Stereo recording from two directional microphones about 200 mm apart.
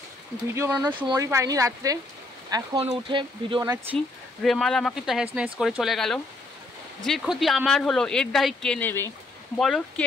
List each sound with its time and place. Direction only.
0.6 s speech: 10° right (ahead or behind)
3.9 s speech: centre (ahead or behind)